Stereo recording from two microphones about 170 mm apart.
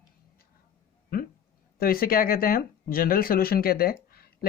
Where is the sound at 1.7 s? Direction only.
60° left (ahead or behind).